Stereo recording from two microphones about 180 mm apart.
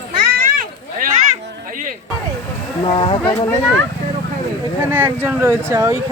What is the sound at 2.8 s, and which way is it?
Speech, 30° left (ahead or behind).